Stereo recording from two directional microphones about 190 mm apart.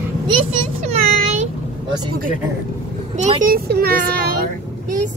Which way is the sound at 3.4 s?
50° right (ahead or behind).